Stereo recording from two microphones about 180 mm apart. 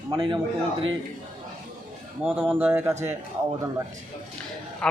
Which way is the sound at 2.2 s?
10° right (ahead or behind).